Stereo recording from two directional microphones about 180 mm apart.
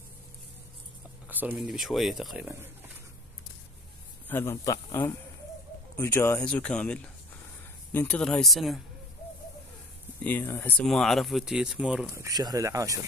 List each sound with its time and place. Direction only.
1.3 s speech: 10° right (ahead or behind)
4.3 s speech: 15° left (ahead or behind)
10.2 s speech: 10° left (ahead or behind); by 12.1 s 5° right (ahead or behind)
12.1 s speech: 20° right (ahead or behind)